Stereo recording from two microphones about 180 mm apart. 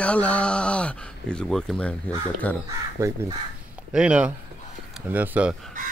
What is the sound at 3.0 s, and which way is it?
Speech, 15° right (ahead or behind).